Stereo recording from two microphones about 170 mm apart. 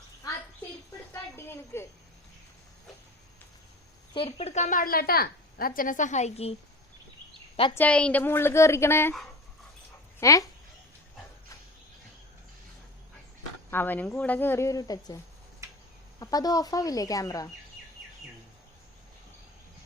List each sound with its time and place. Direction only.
1.1 s a sound: 15° left (ahead or behind)
4.1 s a woman's voice: 35° left (ahead or behind)
7.8 s speech: 5° left (ahead or behind)
10.2 s speech: 20° left (ahead or behind)
13.7 s speech: 10° left (ahead or behind)
15.6 s insect: 15° right (ahead or behind)
16.2 s speech: 20° left (ahead or behind)